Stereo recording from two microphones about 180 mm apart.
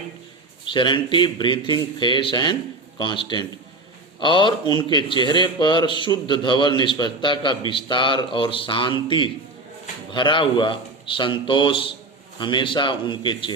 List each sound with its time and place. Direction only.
0.7 s speech: 25° left (ahead or behind)